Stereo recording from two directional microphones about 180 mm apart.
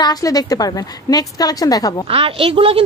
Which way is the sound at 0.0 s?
20° left (ahead or behind).